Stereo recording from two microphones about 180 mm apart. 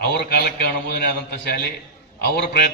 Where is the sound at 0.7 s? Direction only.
60° left (ahead or behind).